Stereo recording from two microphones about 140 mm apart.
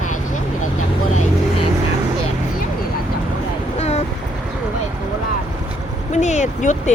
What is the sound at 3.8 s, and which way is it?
Vehicle, 50° left (ahead or behind).